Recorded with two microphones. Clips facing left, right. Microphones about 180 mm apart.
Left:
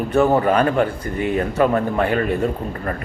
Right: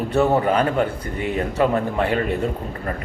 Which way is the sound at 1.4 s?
25° right (ahead or behind).